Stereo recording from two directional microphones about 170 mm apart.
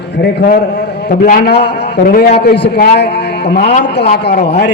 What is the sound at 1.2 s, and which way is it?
A man's voice, 55° left (ahead or behind).